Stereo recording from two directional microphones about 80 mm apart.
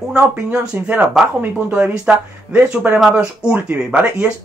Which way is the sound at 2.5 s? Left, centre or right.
Right.